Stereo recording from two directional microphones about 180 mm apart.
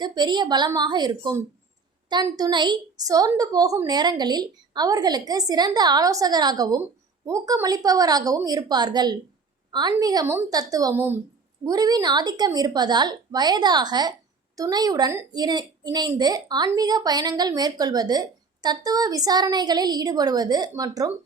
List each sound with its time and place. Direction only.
0.0 s a woman's voice: 25° right (ahead or behind)